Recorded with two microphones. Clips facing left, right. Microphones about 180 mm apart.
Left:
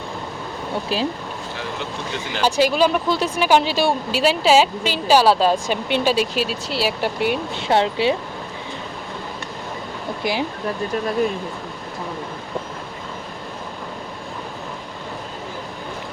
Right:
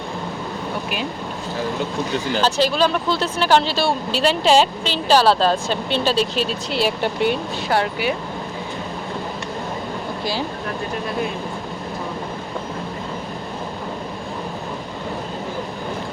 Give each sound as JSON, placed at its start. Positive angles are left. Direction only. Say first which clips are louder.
{"t": 2.4, "sound": "speech", "louder": "left 2 dB", "side_deg": 10}
{"t": 7.5, "sound": "speech", "louder": "left 2 dB", "side_deg": 25}